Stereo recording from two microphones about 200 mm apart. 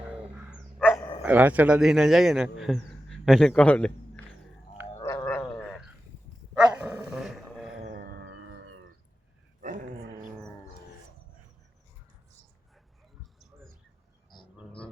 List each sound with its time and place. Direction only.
0.8 s dog: 10° left (ahead or behind)
1.2 s a man's voice: 10° right (ahead or behind)
4.9 s gargling: 15° left (ahead or behind)
6.5 s dog: 5° right (ahead or behind)
7.9 s music: 45° right (ahead or behind)
8.2 s music: 65° right (ahead or behind)